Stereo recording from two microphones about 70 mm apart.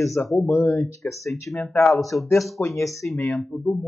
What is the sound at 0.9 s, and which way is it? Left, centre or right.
Speech, left.